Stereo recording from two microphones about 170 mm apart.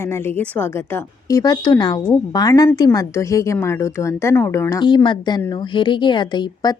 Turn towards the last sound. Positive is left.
turn(degrees=25)  # may be behind; listen again after turning